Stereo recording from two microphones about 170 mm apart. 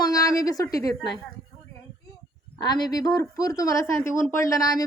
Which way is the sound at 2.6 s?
25° left (ahead or behind).